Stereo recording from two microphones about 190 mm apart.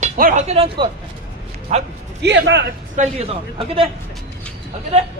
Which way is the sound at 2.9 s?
30° right (ahead or behind).